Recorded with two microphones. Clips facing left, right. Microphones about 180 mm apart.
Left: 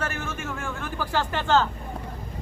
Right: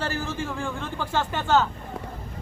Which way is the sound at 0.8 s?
20° right (ahead or behind).